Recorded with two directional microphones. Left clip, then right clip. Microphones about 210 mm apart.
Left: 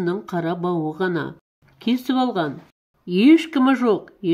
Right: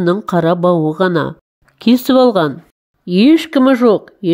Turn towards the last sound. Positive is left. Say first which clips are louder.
# right 8 dB
turn(degrees=-35)  # may be behind; listen again after turning